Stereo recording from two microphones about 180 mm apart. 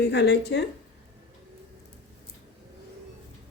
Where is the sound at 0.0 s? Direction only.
70° left (ahead or behind).